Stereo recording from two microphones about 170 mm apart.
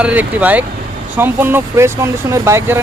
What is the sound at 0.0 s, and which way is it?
Speech, 10° right (ahead or behind).